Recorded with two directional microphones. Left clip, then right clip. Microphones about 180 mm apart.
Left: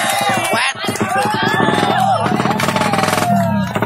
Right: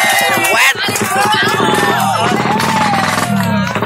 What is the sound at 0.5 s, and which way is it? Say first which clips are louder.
Music: right 6 dB; 5° right (ahead or behind).